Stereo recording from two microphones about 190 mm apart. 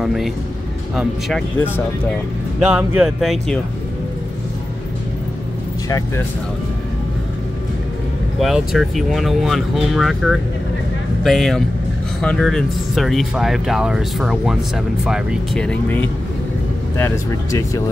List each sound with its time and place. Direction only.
0.0 s speech: centre (ahead or behind)
2.6 s speech: 10° right (ahead or behind)
5.9 s speech: 15° left (ahead or behind)
8.4 s speech: centre (ahead or behind); by 17.8 s 15° left (ahead or behind)